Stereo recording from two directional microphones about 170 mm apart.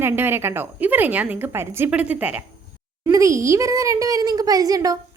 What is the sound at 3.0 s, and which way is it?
A child's voice, 20° right (ahead or behind).